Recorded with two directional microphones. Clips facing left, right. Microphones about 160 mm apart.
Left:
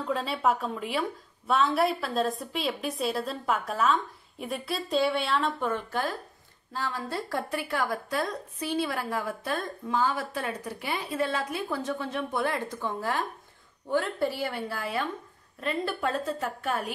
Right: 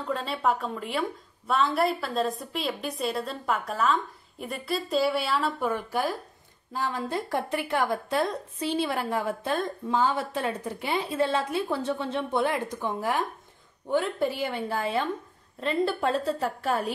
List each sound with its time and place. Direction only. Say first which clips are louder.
0.0 s a woman's voice: even; centre (ahead or behind); by 16.9 s 30° right (ahead or behind)